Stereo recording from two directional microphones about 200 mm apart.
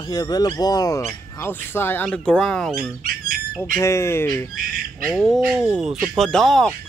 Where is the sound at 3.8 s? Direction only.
15° left (ahead or behind).